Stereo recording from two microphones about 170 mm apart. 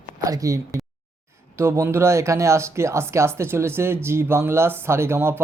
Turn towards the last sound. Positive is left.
turn(degrees=-15)  # may be behind; listen again after turning